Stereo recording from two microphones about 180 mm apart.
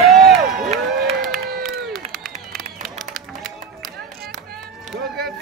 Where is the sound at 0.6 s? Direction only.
35° right (ahead or behind).